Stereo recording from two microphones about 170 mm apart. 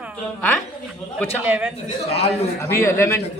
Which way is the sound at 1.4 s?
10° right (ahead or behind).